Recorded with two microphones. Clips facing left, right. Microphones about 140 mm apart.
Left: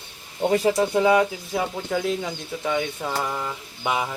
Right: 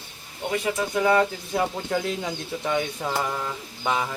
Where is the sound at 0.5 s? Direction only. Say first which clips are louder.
Left 5 dB; 35° left (ahead or behind).